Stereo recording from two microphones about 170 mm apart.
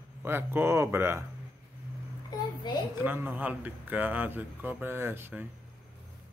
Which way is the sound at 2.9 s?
10° right (ahead or behind).